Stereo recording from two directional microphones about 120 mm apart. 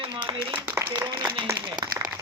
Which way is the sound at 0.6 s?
20° right (ahead or behind).